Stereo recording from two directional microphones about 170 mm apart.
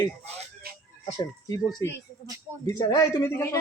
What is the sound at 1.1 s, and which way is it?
A woman's voice, 20° left (ahead or behind).